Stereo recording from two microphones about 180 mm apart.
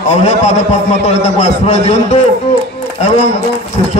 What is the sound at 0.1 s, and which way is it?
A man's voice, 40° left (ahead or behind).